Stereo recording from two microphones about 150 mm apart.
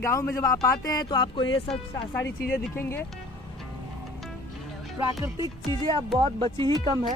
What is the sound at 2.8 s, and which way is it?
Speech, 15° left (ahead or behind).